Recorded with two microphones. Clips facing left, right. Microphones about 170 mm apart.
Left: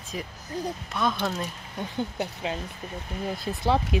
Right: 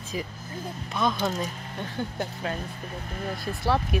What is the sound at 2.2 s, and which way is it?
Speech, 15° left (ahead or behind).